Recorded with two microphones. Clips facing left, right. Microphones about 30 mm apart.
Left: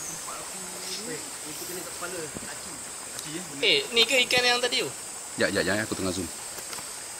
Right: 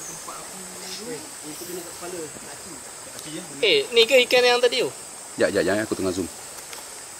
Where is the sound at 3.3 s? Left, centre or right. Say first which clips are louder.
Right 4 dB; centre.